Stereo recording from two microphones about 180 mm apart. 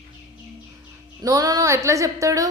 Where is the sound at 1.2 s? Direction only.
20° right (ahead or behind).